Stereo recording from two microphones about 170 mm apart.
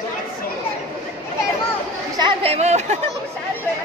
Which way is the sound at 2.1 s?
30° right (ahead or behind).